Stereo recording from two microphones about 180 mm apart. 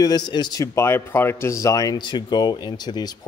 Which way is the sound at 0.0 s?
25° left (ahead or behind).